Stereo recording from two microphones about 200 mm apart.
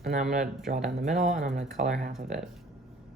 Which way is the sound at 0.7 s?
Centre (ahead or behind).